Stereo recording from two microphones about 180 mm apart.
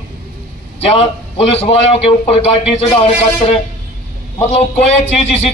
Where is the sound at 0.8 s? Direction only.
35° left (ahead or behind).